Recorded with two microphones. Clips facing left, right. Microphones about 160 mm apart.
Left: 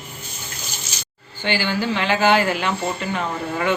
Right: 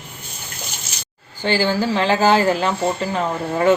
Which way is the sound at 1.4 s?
35° right (ahead or behind).